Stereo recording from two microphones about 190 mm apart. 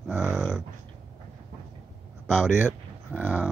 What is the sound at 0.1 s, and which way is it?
Dog, 10° right (ahead or behind).